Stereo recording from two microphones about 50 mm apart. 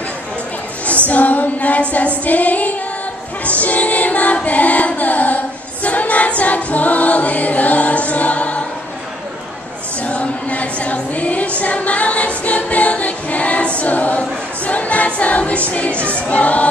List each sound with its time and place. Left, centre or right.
1.0 s female singing: left
3.4 s music: left
4.5 s carnatic music: left
5.9 s choir: left
10.0 s music: left
11.6 s choir: left